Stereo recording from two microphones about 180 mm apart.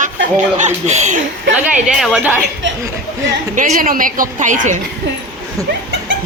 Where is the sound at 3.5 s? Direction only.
45° right (ahead or behind).